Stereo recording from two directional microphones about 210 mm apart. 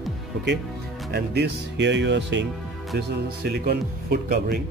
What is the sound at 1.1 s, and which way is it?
Speech, 55° right (ahead or behind).